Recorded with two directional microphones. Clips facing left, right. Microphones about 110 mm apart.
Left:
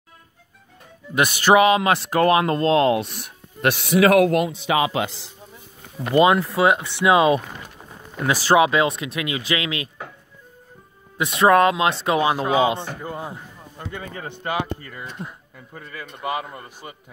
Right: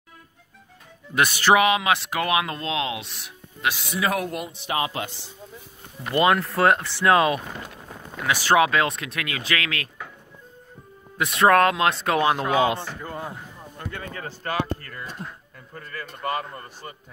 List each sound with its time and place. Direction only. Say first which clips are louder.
1.1 s a man's voice: left 2 dB; 15° left (ahead or behind)
1.6 s speech: left 4 dB; 35° left (ahead or behind); by 5.3 s 90° left
6.1 s speech: left 4 dB; 20° left (ahead or behind)
6.4 s speech: left 1 dB; 5° left (ahead or behind)
7.0 s a man's voice: left 4 dB; 15° left (ahead or behind)
8.2 s speech: left 3 dB; 35° left (ahead or behind)
8.5 s a man's voice: left 3 dB; 20° left (ahead or behind)
11.2 s a man's voice: left 2 dB; 5° left (ahead or behind)